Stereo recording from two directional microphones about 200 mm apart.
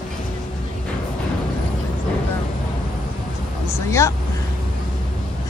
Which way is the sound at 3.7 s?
15° left (ahead or behind).